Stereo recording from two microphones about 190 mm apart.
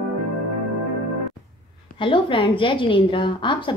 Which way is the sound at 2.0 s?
25° left (ahead or behind).